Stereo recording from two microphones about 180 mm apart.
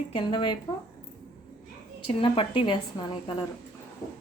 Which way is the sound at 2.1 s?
30° left (ahead or behind).